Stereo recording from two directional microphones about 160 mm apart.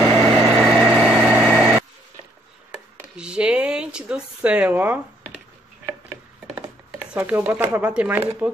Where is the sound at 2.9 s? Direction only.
5° right (ahead or behind).